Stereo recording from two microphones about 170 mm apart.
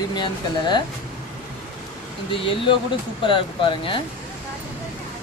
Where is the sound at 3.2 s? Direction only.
30° left (ahead or behind).